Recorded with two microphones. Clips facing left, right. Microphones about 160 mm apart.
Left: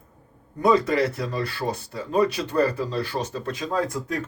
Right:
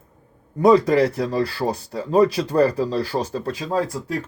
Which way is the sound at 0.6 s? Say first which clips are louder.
Right 5 dB; 35° right (ahead or behind).